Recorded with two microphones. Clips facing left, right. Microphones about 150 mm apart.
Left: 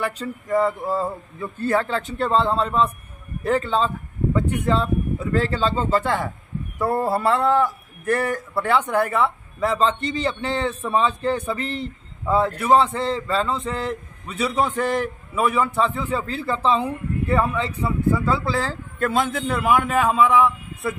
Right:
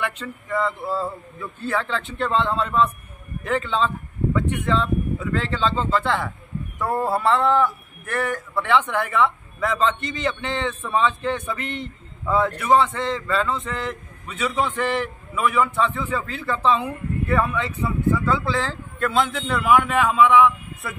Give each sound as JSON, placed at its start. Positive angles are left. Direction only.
{"t": 0.0, "sound": "a man's voice", "side_deg": 40}